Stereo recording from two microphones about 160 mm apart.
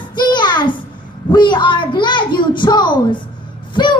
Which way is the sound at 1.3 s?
30° left (ahead or behind).